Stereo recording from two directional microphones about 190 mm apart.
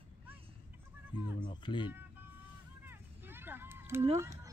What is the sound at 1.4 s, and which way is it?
Speech, 25° left (ahead or behind).